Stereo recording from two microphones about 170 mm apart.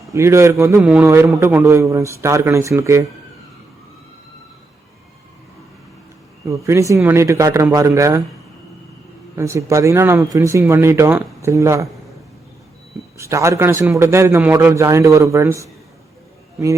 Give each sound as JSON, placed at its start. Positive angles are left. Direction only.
{"t": 0.1, "sound": "a man's voice", "side_deg": -15}
{"t": 6.4, "sound": "a man's voice", "side_deg": -20}
{"t": 9.3, "sound": "a man's voice", "side_deg": -15}
{"t": 13.1, "sound": "a man's voice", "side_deg": -15}